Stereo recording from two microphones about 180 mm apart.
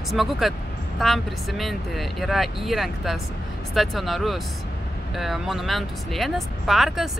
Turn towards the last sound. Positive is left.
turn(degrees=0)  # may be behind; listen again after turning